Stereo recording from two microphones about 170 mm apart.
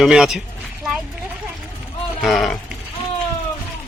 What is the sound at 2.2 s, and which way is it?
Speech, centre (ahead or behind).